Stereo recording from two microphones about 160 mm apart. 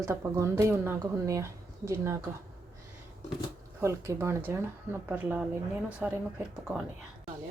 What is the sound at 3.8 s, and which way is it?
Speech, 15° right (ahead or behind).